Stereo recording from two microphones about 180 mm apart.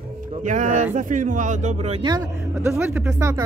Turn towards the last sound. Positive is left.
turn(degrees=-20)  # may be behind; listen again after turning